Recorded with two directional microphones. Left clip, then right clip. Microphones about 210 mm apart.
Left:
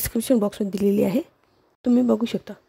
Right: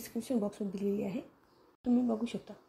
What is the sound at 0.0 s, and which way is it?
Speech, 55° left (ahead or behind).